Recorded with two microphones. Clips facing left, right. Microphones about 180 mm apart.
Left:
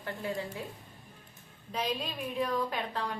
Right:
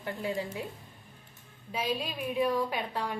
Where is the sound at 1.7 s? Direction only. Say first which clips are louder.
Right 1 dB; 5° right (ahead or behind).